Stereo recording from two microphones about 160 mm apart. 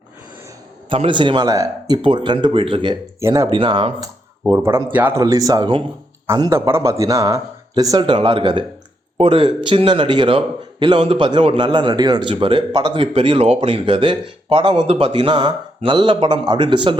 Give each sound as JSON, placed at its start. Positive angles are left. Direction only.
{"t": 0.9, "sound": "speech", "side_deg": -30}
{"t": 3.2, "sound": "speech", "side_deg": -20}
{"t": 3.5, "sound": "speech", "side_deg": -30}
{"t": 5.2, "sound": "a man's voice", "side_deg": -20}